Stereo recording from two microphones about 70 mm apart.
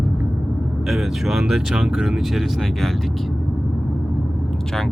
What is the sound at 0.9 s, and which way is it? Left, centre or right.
Speech, centre.